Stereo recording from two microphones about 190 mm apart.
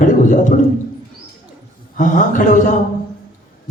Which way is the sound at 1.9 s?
40° left (ahead or behind).